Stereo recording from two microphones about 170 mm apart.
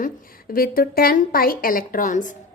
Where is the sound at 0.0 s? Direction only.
60° left (ahead or behind).